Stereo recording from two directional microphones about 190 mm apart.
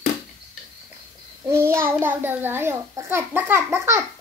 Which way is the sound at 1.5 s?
15° right (ahead or behind).